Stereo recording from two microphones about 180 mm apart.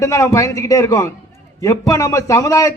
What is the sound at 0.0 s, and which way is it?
A man's voice, 15° left (ahead or behind).